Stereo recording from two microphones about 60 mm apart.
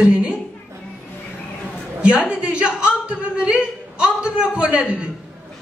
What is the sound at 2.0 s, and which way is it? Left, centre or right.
A woman's voice, centre.